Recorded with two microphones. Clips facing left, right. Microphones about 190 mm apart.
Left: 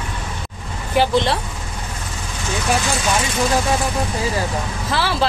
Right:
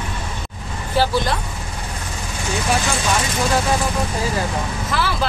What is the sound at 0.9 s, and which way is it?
Vehicle, 15° left (ahead or behind).